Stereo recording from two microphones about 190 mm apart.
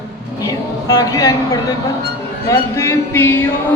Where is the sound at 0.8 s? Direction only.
20° left (ahead or behind).